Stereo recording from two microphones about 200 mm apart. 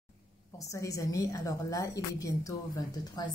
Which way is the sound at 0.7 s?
15° left (ahead or behind).